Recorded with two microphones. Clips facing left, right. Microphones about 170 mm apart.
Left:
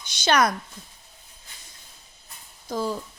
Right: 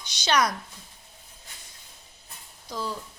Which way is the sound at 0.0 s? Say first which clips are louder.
Left 3 dB; 50° left (ahead or behind).